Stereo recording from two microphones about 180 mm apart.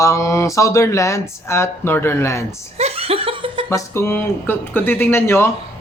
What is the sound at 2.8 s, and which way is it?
Laughter, 35° right (ahead or behind).